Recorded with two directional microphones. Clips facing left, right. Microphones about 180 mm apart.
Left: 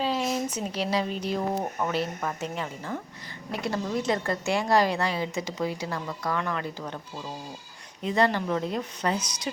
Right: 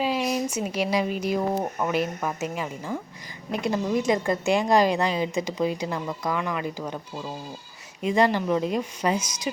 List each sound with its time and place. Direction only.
0.0 s a sound: 15° right (ahead or behind)
0.4 s a woman's voice: 10° right (ahead or behind)
8.0 s a woman's voice: 15° right (ahead or behind)